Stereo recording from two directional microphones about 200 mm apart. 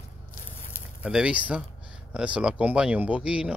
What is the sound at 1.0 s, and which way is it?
Speech, 5° right (ahead or behind).